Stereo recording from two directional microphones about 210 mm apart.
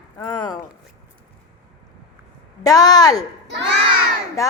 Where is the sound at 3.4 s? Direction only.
55° right (ahead or behind).